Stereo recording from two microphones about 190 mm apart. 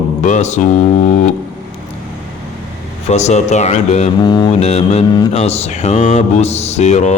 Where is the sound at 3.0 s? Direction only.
35° left (ahead or behind).